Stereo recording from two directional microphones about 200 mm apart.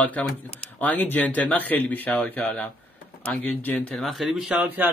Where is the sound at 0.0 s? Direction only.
5° left (ahead or behind).